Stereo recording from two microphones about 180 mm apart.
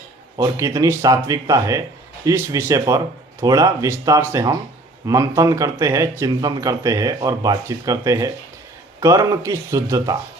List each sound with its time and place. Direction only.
0.3 s speech: 20° right (ahead or behind)